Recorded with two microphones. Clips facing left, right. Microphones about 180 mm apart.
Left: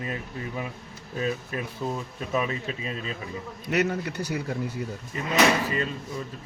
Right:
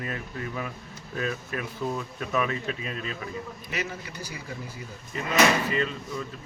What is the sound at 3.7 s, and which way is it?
Speech, 65° left (ahead or behind).